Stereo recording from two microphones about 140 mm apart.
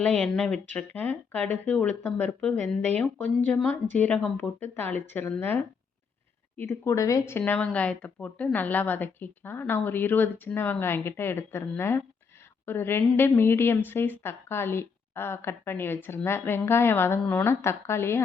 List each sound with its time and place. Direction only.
0.0 s speech: 5° left (ahead or behind)